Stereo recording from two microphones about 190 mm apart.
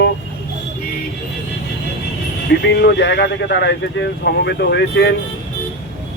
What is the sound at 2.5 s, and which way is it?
Speech, 60° left (ahead or behind).